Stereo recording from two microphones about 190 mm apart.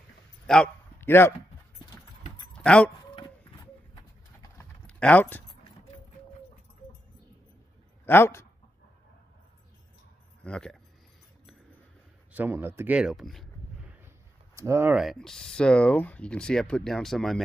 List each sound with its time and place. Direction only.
0.5 s a sound: 10° left (ahead or behind)
2.5 s keys jangling: 5° left (ahead or behind)
3.9 s clip-clop: 20° left (ahead or behind)
4.8 s speech: 5° left (ahead or behind)
8.0 s speech: 10° left (ahead or behind)
10.4 s speech: 5° left (ahead or behind)
12.3 s speech: 10° right (ahead or behind)
14.0 s speech: 15° right (ahead or behind); by 17.4 s centre (ahead or behind)